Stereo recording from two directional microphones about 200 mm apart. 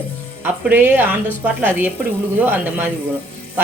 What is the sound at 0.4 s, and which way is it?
Speech, 10° right (ahead or behind).